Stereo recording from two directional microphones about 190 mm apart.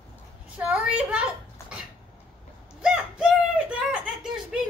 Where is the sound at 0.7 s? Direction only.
5° right (ahead or behind).